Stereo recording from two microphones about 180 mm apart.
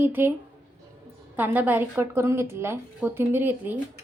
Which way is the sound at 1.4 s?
10° right (ahead or behind).